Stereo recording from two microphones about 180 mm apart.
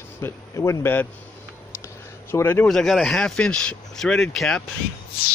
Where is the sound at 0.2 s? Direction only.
15° left (ahead or behind).